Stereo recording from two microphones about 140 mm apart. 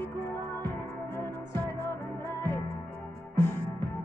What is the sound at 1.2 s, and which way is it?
Music, 15° left (ahead or behind).